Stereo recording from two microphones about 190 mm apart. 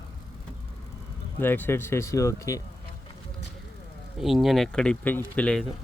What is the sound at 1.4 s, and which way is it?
Speech, 10° left (ahead or behind).